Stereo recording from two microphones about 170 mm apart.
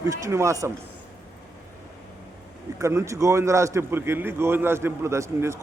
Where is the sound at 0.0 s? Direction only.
15° right (ahead or behind).